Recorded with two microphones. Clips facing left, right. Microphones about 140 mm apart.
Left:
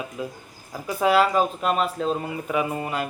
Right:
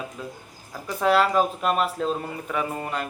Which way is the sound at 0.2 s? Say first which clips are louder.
Left 4 dB; 10° left (ahead or behind).